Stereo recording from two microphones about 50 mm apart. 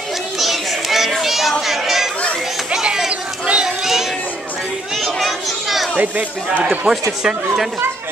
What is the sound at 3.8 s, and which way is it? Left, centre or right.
Children playing, centre.